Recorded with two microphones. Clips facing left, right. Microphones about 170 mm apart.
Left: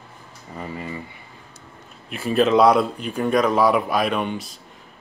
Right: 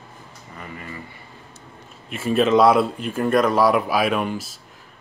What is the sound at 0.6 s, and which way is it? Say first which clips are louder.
Speech: left 5 dB; 25° left (ahead or behind).